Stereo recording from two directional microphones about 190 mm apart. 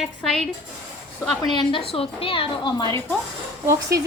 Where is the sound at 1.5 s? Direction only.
25° left (ahead or behind).